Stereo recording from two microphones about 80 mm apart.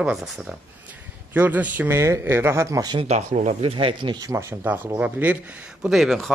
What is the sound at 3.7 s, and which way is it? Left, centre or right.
Speech, right.